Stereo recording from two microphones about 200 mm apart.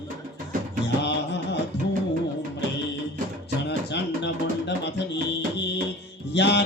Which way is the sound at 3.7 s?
60° left (ahead or behind).